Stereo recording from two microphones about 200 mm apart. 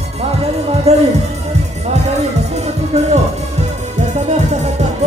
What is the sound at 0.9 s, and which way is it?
Speech, 30° right (ahead or behind).